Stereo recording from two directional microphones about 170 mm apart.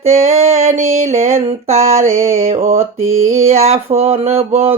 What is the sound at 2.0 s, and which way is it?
Mantra, 15° right (ahead or behind).